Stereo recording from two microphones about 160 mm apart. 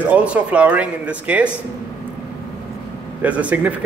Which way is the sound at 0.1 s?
10° right (ahead or behind).